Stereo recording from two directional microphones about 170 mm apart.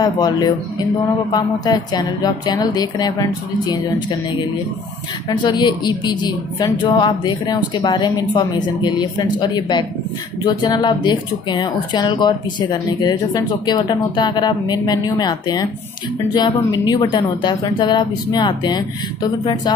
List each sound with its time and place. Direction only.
0.0 s speech: 25° left (ahead or behind)
5.4 s speech: 25° left (ahead or behind)